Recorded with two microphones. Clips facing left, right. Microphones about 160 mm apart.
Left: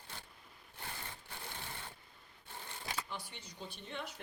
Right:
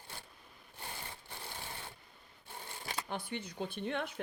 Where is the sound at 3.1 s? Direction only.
55° right (ahead or behind).